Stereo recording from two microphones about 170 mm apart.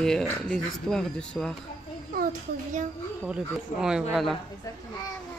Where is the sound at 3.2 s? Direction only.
5° right (ahead or behind).